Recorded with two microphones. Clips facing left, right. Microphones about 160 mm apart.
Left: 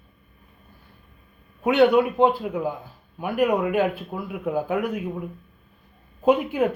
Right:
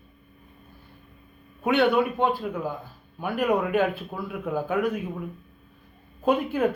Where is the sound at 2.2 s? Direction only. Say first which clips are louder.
Left 5 dB; 10° left (ahead or behind).